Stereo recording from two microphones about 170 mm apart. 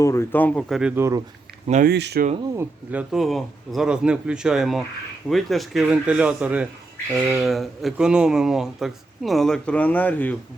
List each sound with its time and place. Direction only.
0.0 s speech: 15° left (ahead or behind)
0.8 s speech: 5° right (ahead or behind)
1.6 s speech: 45° right (ahead or behind)
1.9 s speech: 80° right
2.6 s speech: 10° right (ahead or behind); by 10.3 s 10° left (ahead or behind)